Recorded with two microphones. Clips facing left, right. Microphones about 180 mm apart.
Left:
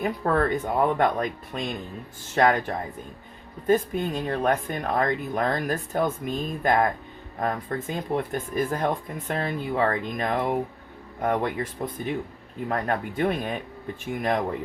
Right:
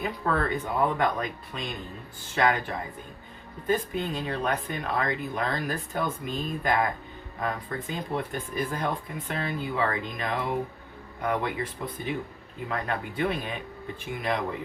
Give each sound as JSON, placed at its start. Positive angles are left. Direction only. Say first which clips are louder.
{"t": 0.0, "sound": "speech", "louder": "left 4 dB", "side_deg": 45}